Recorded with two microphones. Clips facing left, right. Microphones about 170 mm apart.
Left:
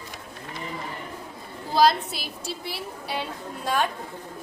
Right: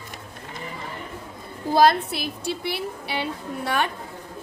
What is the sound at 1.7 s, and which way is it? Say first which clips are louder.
A woman's voice: right 2 dB; 50° right (ahead or behind).